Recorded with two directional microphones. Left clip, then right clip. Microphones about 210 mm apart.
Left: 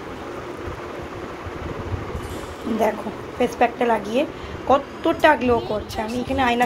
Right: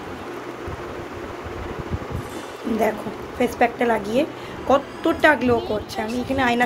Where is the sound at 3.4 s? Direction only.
15° right (ahead or behind).